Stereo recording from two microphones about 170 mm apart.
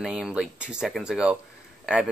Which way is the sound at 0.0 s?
5° right (ahead or behind).